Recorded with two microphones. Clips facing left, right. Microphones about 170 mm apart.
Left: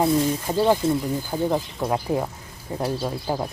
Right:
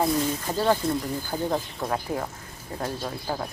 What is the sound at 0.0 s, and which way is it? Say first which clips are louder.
Speech: left 4 dB; 10° left (ahead or behind).